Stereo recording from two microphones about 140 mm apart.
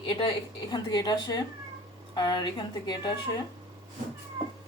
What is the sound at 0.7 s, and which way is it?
A woman's voice, 30° left (ahead or behind).